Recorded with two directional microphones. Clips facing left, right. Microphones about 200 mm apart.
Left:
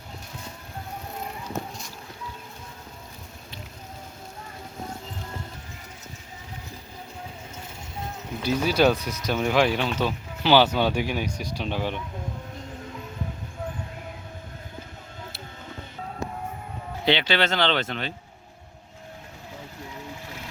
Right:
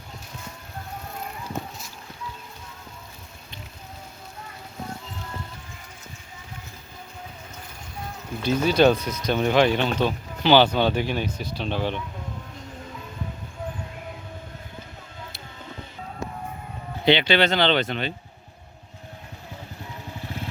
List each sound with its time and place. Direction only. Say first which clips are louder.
8.4 s speech: right 2 dB; 5° left (ahead or behind)
17.1 s speech: right 4 dB; centre (ahead or behind)
20.2 s boat: right 6 dB; 30° right (ahead or behind)